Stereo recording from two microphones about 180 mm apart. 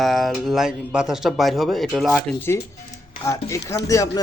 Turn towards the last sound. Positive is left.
turn(degrees=20)  # may be behind; listen again after turning